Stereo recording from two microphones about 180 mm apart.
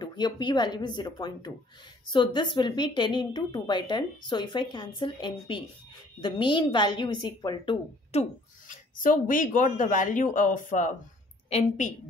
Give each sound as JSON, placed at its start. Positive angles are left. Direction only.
{"t": 0.0, "sound": "speech", "side_deg": 25}
{"t": 8.1, "sound": "speech", "side_deg": 40}